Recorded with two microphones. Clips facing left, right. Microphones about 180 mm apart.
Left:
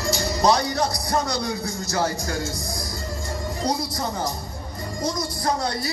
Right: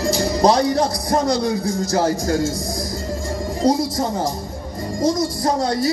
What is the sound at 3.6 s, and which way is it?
Speech, 45° right (ahead or behind).